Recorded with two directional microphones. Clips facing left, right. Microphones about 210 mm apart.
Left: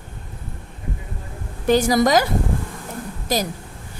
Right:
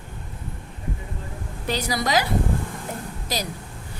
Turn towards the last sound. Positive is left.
turn(degrees=50)  # may be behind; listen again after turning